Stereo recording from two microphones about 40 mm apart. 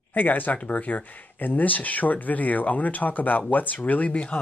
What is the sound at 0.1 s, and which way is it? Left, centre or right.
Speech, left.